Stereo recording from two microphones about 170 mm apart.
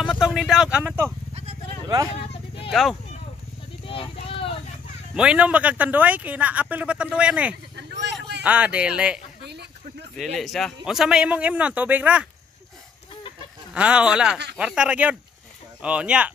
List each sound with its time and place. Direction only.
0.0 s a sound: centre (ahead or behind)
2.7 s a man's voice: centre (ahead or behind)
3.8 s a sound: 30° left (ahead or behind)
5.1 s speech: 5° right (ahead or behind)
7.7 s vehicle: 90° right
8.4 s speech: 5° right (ahead or behind)
9.4 s a sound: 80° right
10.1 s a man's voice: centre (ahead or behind)
13.7 s a man's voice: 5° right (ahead or behind)